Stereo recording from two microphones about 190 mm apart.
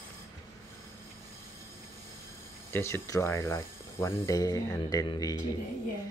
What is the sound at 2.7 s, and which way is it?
Speech, 15° left (ahead or behind).